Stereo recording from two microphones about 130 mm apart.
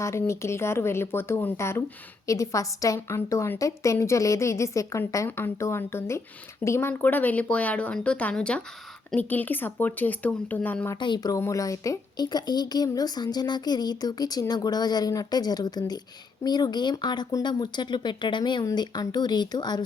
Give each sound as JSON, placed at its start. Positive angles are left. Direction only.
{"t": 0.0, "sound": "a woman's voice", "side_deg": 20}
{"t": 11.0, "sound": "a woman's voice", "side_deg": 35}